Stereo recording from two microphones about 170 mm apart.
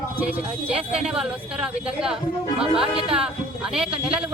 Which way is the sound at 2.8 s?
35° right (ahead or behind).